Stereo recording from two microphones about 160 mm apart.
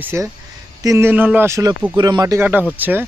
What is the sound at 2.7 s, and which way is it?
Speech, 10° right (ahead or behind).